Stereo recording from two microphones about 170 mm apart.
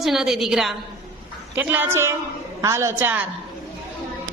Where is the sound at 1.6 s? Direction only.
10° right (ahead or behind).